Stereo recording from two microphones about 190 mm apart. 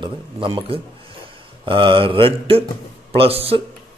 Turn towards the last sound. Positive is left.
turn(degrees=-30)  # may be behind; listen again after turning